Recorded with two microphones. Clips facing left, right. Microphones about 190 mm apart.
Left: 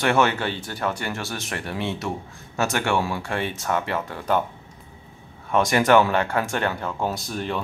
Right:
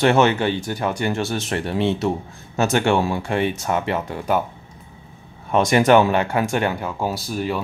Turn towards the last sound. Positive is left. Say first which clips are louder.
# right 3 dB
turn(degrees=-5)  # may be behind; listen again after turning